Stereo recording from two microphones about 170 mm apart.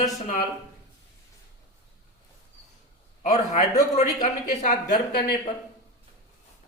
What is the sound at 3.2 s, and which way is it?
Speech, 40° left (ahead or behind).